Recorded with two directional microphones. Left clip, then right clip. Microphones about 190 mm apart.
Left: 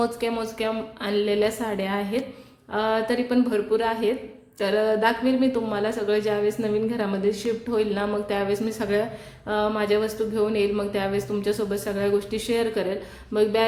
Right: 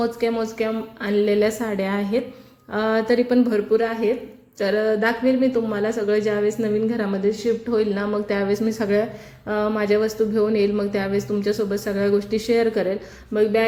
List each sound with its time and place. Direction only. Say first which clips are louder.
0.0 s a woman's voice: right 3 dB; 15° right (ahead or behind)